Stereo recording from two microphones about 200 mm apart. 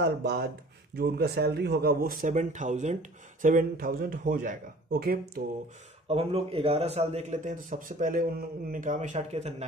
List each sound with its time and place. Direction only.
0.0 s speech: 55° right (ahead or behind)
6.0 s a man's voice: 30° right (ahead or behind)